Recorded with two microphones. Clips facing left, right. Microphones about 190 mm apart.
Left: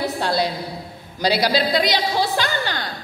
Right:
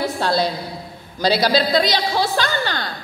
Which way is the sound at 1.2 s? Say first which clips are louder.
Right 2 dB; 15° left (ahead or behind).